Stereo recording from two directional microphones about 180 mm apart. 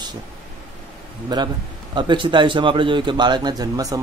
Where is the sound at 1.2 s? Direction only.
25° right (ahead or behind).